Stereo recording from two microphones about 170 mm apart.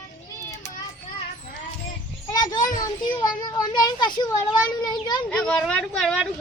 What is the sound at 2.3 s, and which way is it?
Children playing, 25° left (ahead or behind).